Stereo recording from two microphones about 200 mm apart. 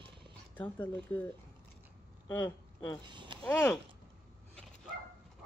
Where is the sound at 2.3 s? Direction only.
15° left (ahead or behind).